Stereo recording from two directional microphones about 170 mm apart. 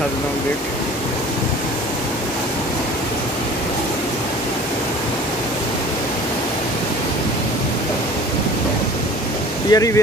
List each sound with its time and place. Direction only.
9.7 s speech: 20° left (ahead or behind)